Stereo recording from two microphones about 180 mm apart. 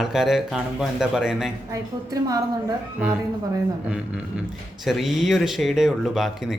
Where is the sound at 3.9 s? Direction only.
5° right (ahead or behind).